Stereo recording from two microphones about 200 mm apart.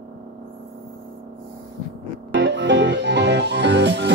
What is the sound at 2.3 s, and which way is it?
Music, 65° right (ahead or behind).